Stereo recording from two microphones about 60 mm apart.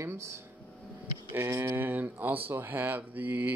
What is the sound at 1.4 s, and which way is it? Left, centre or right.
Speech, right.